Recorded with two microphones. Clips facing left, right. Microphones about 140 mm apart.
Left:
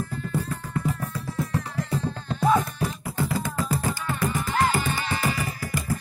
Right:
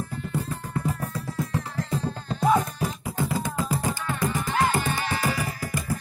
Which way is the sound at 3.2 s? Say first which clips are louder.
Even; 15° right (ahead or behind).